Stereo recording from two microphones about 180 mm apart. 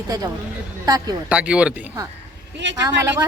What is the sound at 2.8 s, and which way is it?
Speech, 20° right (ahead or behind).